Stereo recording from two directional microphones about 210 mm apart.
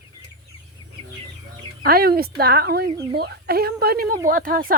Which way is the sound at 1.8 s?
45° right (ahead or behind).